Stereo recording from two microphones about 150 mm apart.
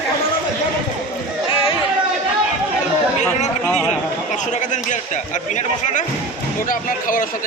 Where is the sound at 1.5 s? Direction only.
35° left (ahead or behind).